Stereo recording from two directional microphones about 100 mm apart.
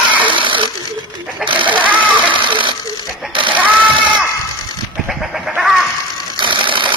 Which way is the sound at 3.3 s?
55° right (ahead or behind).